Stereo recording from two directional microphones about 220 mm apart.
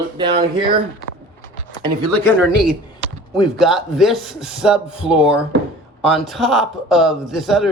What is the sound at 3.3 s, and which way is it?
Speech, centre (ahead or behind).